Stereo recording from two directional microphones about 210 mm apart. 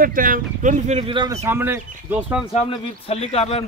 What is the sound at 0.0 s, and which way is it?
Speech, 40° right (ahead or behind).